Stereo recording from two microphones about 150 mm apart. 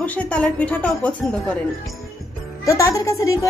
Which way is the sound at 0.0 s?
10° left (ahead or behind).